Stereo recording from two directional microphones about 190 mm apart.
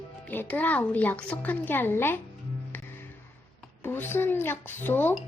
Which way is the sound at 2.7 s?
10° left (ahead or behind).